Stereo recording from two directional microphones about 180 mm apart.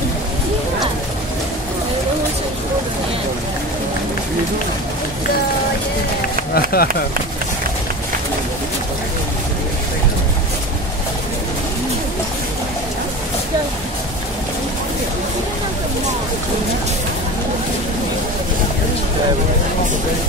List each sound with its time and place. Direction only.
6.5 s speech: 55° left (ahead or behind)